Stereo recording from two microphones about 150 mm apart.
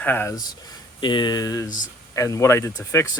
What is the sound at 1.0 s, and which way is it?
Speech, 30° left (ahead or behind).